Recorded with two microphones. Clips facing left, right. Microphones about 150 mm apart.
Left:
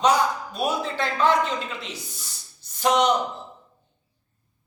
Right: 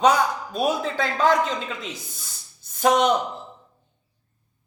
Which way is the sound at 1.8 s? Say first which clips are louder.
Right 2 dB; 50° right (ahead or behind).